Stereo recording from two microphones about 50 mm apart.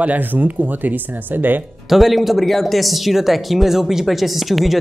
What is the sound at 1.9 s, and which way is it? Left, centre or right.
Speech, centre.